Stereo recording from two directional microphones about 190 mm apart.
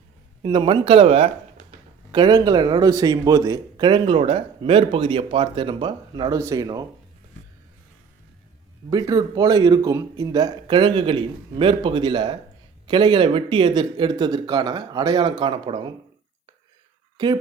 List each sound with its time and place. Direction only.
0.4 s a man's voice: 25° right (ahead or behind)
8.9 s a man's voice: 20° right (ahead or behind)